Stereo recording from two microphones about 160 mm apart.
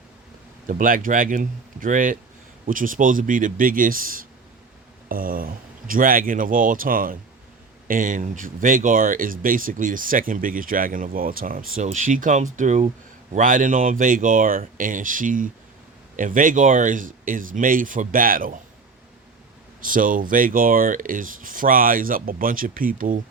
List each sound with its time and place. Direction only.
0.7 s speech: 55° right (ahead or behind)
19.8 s speech: 60° right (ahead or behind)